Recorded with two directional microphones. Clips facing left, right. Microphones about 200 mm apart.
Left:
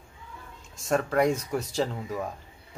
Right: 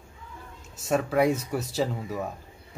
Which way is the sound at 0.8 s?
5° right (ahead or behind).